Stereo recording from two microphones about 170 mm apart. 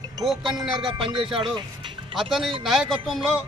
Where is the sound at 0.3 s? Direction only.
Centre (ahead or behind).